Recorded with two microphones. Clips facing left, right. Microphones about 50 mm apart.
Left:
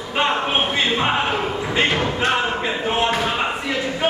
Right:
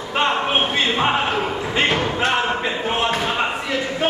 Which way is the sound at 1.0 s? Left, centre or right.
Centre.